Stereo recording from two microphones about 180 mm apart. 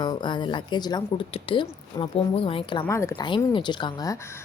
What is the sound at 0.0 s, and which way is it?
Speech, 25° left (ahead or behind).